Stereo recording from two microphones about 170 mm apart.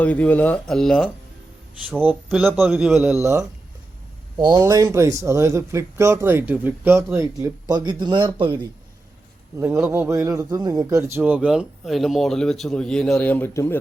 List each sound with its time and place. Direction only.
0.0 s a man's voice: 10° left (ahead or behind)
3.2 s speech: 15° right (ahead or behind)
9.6 s speech: 15° right (ahead or behind)
11.2 s a man's voice: 5° right (ahead or behind); by 13.7 s 15° left (ahead or behind)